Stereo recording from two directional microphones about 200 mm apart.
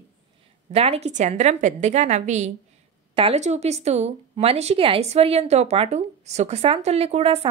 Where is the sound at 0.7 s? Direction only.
30° right (ahead or behind).